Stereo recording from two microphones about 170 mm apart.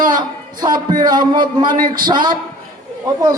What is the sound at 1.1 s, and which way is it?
Speech, 55° right (ahead or behind).